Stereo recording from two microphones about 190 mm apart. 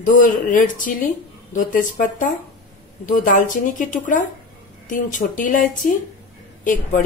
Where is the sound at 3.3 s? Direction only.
45° left (ahead or behind).